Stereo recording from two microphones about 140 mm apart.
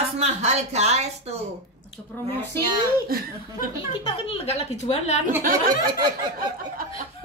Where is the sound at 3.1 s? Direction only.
90° right.